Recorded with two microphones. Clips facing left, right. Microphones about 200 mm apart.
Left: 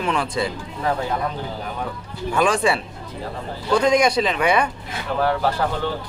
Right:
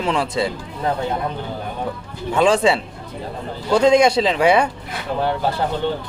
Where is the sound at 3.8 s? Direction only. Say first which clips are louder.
Right 5 dB; 25° right (ahead or behind).